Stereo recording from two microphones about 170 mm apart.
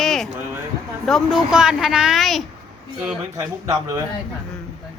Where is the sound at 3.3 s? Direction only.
20° right (ahead or behind).